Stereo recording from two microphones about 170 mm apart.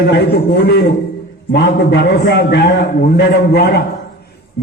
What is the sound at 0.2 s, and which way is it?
A man's voice, 75° left (ahead or behind).